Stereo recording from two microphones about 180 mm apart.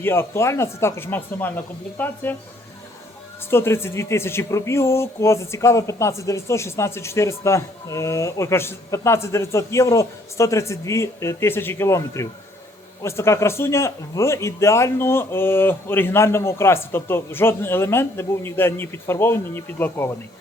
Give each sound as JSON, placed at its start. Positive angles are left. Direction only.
{"t": 0.0, "sound": "speech", "side_deg": 15}
{"t": 3.5, "sound": "speech", "side_deg": 15}